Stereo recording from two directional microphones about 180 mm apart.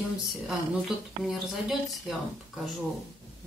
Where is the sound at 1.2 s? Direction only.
Centre (ahead or behind).